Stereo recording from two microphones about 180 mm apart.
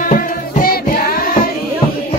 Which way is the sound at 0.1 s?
50° left (ahead or behind).